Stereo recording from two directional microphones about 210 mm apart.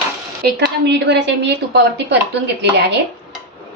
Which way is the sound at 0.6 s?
55° right (ahead or behind).